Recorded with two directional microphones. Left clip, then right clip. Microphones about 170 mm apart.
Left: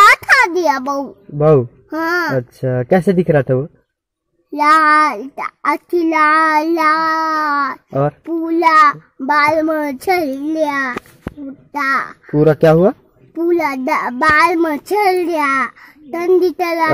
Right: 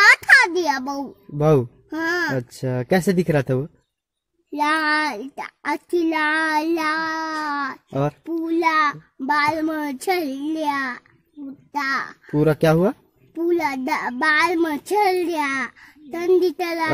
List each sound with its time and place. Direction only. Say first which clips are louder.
0.0 s a sound: left 4 dB; 5° right (ahead or behind)
1.4 s speech: left 6 dB; 45° right (ahead or behind)
1.9 s a child's voice: left 5 dB; centre (ahead or behind)
2.3 s speech: left 7 dB; 45° right (ahead or behind)
4.6 s a child's voice: left 10 dB; 5° right (ahead or behind)
7.9 s speech: left 5 dB; 55° right (ahead or behind)
8.3 s a child's voice: left 8 dB; centre (ahead or behind)
12.4 s speech: left 7 dB; 30° right (ahead or behind)
13.3 s a child's voice: left 6 dB; 10° right (ahead or behind)